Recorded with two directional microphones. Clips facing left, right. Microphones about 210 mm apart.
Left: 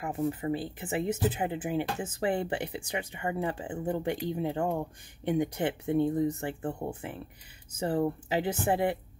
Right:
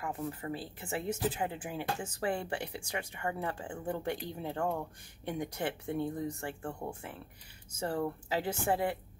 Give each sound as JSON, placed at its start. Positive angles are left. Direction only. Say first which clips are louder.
{"t": 0.0, "sound": "speech", "louder": "left 7 dB", "side_deg": 20}